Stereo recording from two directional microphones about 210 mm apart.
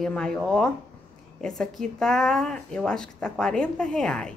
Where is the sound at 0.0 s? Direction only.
5° left (ahead or behind).